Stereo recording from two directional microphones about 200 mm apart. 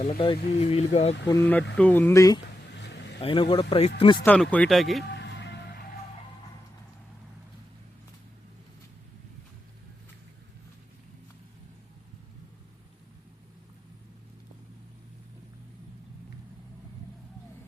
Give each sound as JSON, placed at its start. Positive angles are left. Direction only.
{"t": 0.0, "sound": "speech", "side_deg": 25}
{"t": 1.3, "sound": "speech", "side_deg": 10}
{"t": 2.7, "sound": "vehicle", "side_deg": 60}
{"t": 3.2, "sound": "speech", "side_deg": 25}
{"t": 4.3, "sound": "speech", "side_deg": 5}
{"t": 5.1, "sound": "music", "side_deg": 60}